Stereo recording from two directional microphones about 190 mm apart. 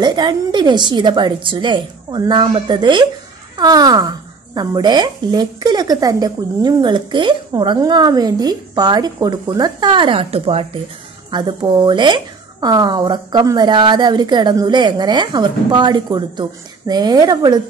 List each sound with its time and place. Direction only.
0.0 s speech: 20° right (ahead or behind)